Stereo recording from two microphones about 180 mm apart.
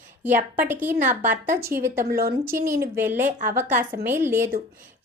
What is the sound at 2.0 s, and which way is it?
Speech, 55° right (ahead or behind).